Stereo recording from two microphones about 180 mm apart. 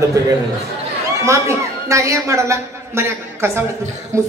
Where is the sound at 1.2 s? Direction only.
15° right (ahead or behind).